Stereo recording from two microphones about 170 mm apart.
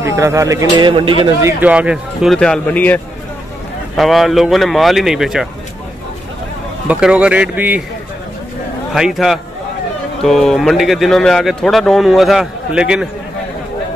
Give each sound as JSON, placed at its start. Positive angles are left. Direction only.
{"t": 0.0, "sound": "a man's voice", "side_deg": -15}
{"t": 1.4, "sound": "speech", "side_deg": -10}
{"t": 2.3, "sound": "a man's voice", "side_deg": 5}
{"t": 6.9, "sound": "speech", "side_deg": -5}
{"t": 8.9, "sound": "a man's voice", "side_deg": 0}